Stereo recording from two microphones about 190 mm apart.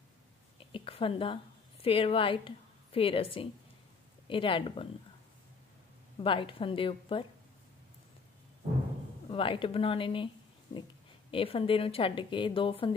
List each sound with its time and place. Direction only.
0.7 s a woman's voice: 30° left (ahead or behind)
6.2 s speech: 25° left (ahead or behind)
9.3 s speech: 30° left (ahead or behind)